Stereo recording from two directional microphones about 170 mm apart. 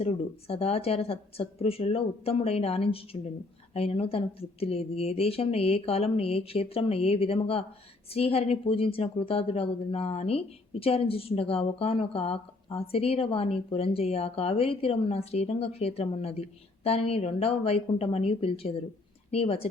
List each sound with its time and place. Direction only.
0.0 s a woman's voice: 35° left (ahead or behind)